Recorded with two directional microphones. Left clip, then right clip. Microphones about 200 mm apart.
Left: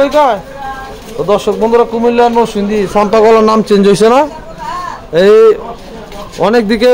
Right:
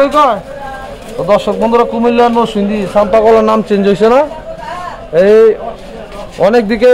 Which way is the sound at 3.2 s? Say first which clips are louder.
Left 1 dB; 20° left (ahead or behind).